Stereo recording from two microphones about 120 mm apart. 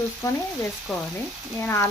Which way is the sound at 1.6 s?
20° left (ahead or behind).